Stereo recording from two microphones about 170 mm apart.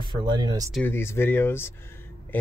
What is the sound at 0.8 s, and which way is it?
Speech, 15° left (ahead or behind).